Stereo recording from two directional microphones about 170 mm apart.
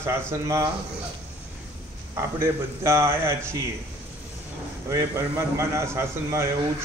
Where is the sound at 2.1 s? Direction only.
15° right (ahead or behind).